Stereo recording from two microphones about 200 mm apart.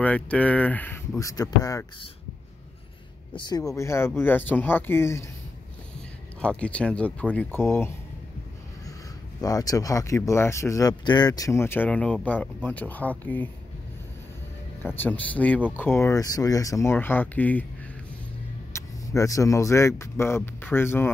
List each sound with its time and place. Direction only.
0.0 s speech: 5° left (ahead or behind)
3.3 s speech: 20° left (ahead or behind)
6.4 s speech: 5° left (ahead or behind)
9.4 s speech: 15° left (ahead or behind)
15.0 s speech: 10° left (ahead or behind)
18.7 s speech: 15° left (ahead or behind)